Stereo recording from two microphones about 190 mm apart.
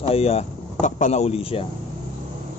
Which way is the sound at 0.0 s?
30° left (ahead or behind).